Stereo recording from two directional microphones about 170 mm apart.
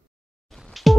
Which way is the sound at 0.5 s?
Centre (ahead or behind).